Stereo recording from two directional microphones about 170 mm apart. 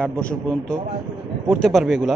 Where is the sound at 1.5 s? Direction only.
Centre (ahead or behind).